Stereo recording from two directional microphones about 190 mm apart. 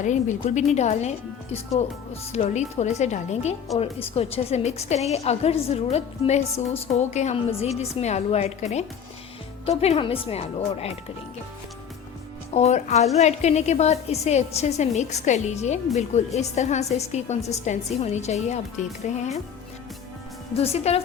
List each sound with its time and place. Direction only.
0.0 s a woman's voice: 40° left (ahead or behind)
2.3 s a woman's voice: 35° left (ahead or behind)
12.5 s a woman's voice: 35° left (ahead or behind)
20.5 s a woman's voice: 30° left (ahead or behind)